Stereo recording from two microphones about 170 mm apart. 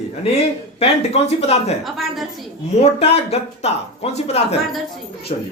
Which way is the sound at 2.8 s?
35° left (ahead or behind).